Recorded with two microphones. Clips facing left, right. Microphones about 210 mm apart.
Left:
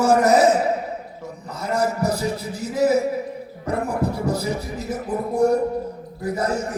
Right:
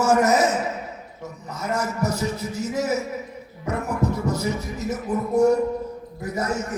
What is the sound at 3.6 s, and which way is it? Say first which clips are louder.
Music: left 1 dB; 35° left (ahead or behind).